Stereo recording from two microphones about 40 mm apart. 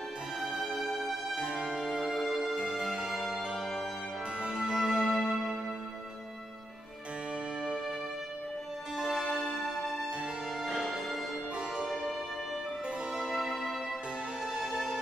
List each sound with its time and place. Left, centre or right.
0.4 s music: centre
0.7 s music: centre
1.3 s music: right
2.1 s music: centre
2.5 s music: right
4.8 s music: centre
8.9 s music: centre
9.6 s music: centre
13.2 s music: centre
14.4 s music: centre